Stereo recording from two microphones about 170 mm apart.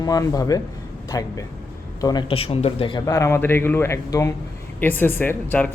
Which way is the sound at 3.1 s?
15° left (ahead or behind).